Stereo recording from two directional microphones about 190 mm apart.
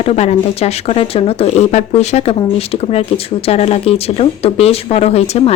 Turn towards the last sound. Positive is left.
turn(degrees=35)  # may be behind; listen again after turning